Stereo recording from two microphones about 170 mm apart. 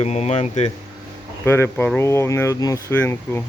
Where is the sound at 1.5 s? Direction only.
10° left (ahead or behind).